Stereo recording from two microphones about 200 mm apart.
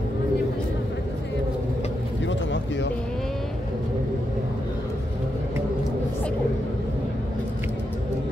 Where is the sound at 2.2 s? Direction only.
65° left (ahead or behind).